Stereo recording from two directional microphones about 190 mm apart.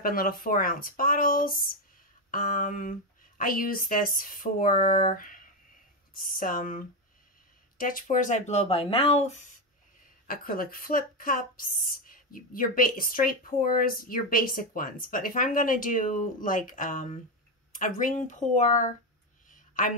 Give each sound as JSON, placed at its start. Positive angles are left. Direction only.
{"t": 0.0, "sound": "a woman's voice", "side_deg": 50}
{"t": 10.2, "sound": "a woman's voice", "side_deg": 50}
{"t": 19.5, "sound": "a sound", "side_deg": 45}